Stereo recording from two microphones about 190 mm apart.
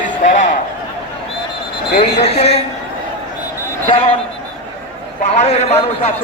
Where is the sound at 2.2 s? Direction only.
35° left (ahead or behind).